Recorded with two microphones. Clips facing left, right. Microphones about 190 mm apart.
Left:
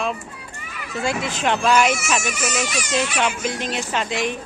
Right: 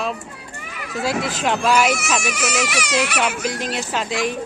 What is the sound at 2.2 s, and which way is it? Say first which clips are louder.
Speech: right 2 dB; 70° right (ahead or behind).